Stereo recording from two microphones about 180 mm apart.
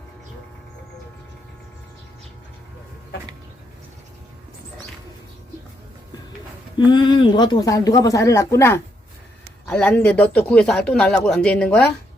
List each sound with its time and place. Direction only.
6.7 s a man's voice: 25° left (ahead or behind); by 11.9 s 5° left (ahead or behind)